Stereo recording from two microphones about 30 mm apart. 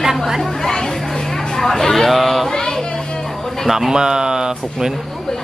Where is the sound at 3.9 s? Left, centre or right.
Right.